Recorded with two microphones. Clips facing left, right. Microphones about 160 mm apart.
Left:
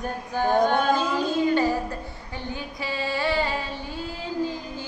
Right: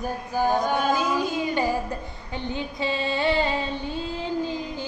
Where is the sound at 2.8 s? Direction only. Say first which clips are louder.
Right 2 dB; 25° right (ahead or behind).